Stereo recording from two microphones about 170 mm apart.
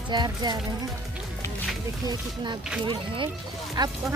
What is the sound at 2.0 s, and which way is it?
Speech, 25° right (ahead or behind).